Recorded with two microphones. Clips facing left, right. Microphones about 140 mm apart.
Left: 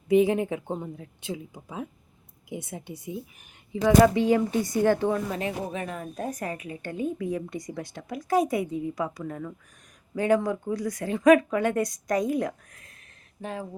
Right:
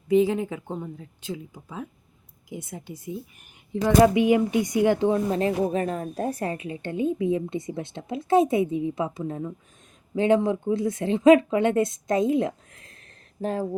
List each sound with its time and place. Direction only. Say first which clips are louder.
0.3 s speech: left 1 dB; 15° left (ahead or behind)
4.0 s speech: right 2 dB; 15° right (ahead or behind)
5.3 s a woman's voice: right 7 dB; 35° right (ahead or behind)